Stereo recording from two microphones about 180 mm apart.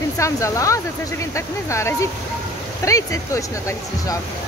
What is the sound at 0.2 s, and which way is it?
Speech, 15° left (ahead or behind).